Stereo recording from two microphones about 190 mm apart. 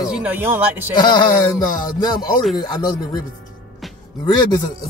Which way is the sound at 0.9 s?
20° left (ahead or behind).